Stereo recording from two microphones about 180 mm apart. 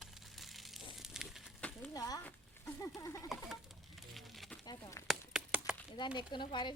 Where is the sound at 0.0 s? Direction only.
Centre (ahead or behind).